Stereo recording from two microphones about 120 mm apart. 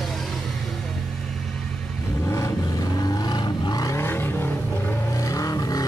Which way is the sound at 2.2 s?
25° left (ahead or behind).